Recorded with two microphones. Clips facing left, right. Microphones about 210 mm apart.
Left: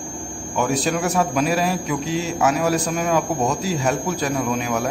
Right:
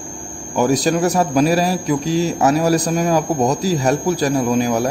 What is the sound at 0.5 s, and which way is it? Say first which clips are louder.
A man's voice: right 5 dB; 40° right (ahead or behind).